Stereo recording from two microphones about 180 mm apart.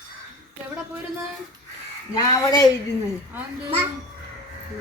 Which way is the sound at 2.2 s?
20° left (ahead or behind).